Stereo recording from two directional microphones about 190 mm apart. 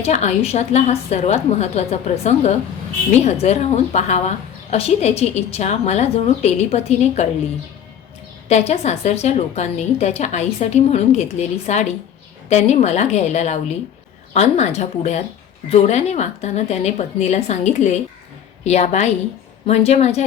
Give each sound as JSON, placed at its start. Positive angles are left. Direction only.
{"t": 0.0, "sound": "a woman's voice", "side_deg": 35}
{"t": 8.4, "sound": "a woman's voice", "side_deg": 35}